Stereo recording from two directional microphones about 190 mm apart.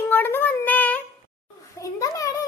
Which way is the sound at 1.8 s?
20° left (ahead or behind).